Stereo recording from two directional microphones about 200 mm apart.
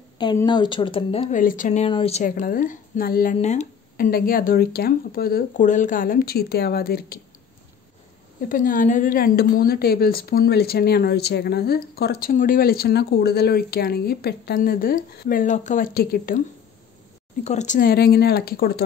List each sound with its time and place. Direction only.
0.2 s a woman's voice: 20° left (ahead or behind)
1.3 s speech: 40° left (ahead or behind)
1.9 s a woman's voice: 30° left (ahead or behind); by 7.2 s 50° left (ahead or behind)
8.4 s a woman's voice: 45° left (ahead or behind)
17.4 s a woman's voice: 35° left (ahead or behind); by 18.9 s 50° left (ahead or behind)